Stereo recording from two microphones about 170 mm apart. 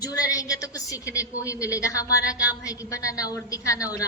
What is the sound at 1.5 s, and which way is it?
A woman's voice, 20° left (ahead or behind).